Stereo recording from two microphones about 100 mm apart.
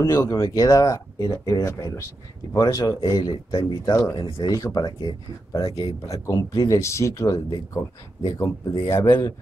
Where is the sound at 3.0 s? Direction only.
45° left (ahead or behind).